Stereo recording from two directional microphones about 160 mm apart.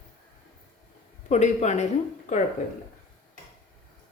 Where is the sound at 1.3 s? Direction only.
45° left (ahead or behind).